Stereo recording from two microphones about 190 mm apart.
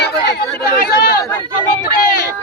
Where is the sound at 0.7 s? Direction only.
50° left (ahead or behind).